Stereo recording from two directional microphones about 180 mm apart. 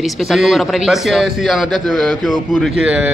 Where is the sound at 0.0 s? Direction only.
Centre (ahead or behind).